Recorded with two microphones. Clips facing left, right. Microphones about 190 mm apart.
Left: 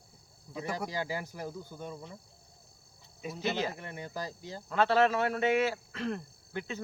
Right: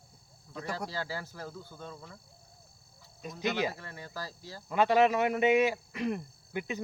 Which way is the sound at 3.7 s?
20° left (ahead or behind).